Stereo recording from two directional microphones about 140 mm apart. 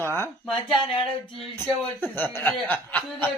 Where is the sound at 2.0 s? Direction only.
15° left (ahead or behind).